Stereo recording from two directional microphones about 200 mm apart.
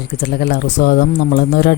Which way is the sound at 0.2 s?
55° left (ahead or behind).